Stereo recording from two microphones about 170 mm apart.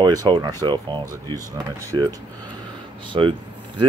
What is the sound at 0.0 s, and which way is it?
Speech, 25° right (ahead or behind).